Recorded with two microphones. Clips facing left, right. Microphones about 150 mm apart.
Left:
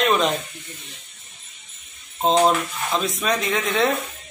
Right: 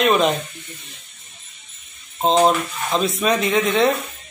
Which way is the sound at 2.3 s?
15° right (ahead or behind).